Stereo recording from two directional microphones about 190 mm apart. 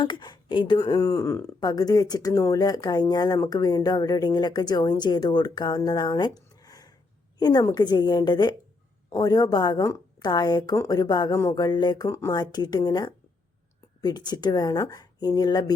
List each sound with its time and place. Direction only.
0.0 s speech: 25° left (ahead or behind)
6.6 s a sound: 20° left (ahead or behind)
7.3 s speech: 20° left (ahead or behind)